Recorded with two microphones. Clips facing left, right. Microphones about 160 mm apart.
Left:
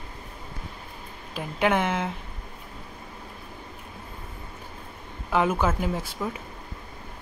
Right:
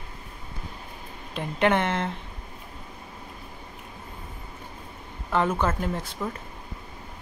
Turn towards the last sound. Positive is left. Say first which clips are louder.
# left 1 dB
turn(degrees=5)  # may be behind; listen again after turning